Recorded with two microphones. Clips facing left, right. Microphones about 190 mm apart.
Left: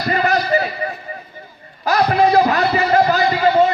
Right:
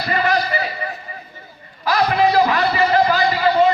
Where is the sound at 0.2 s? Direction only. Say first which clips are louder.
Left 2 dB; 40° left (ahead or behind).